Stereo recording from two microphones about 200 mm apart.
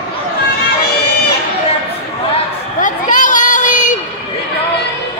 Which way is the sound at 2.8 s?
40° left (ahead or behind).